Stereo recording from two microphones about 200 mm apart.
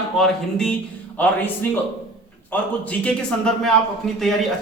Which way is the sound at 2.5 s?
10° left (ahead or behind).